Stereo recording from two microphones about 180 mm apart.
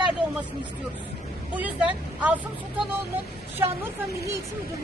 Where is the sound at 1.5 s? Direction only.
5° right (ahead or behind).